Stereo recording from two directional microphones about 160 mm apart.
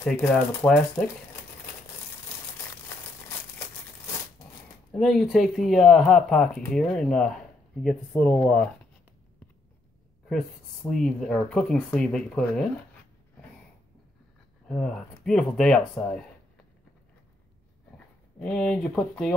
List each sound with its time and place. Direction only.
0.0 s speech: 5° left (ahead or behind)
4.9 s speech: centre (ahead or behind)
10.9 s speech: centre (ahead or behind)
14.7 s speech: 5° left (ahead or behind)
17.9 s speech: 5° left (ahead or behind)